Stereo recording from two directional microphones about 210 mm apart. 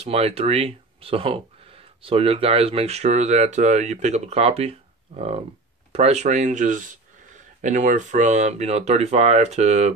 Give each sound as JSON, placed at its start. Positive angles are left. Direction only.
{"t": 0.0, "sound": "speech", "side_deg": -30}